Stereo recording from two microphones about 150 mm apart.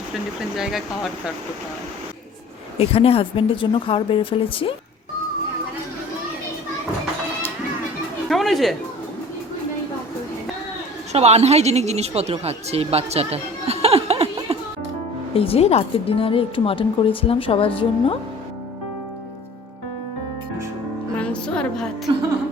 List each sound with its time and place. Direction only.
0.1 s speech: centre (ahead or behind)
2.7 s speech: 40° left (ahead or behind)
8.3 s a sound: centre (ahead or behind)
11.1 s speech: 45° right (ahead or behind)
15.4 s speech: 40° left (ahead or behind)
21.2 s music: 5° left (ahead or behind)
22.1 s music: 35° right (ahead or behind)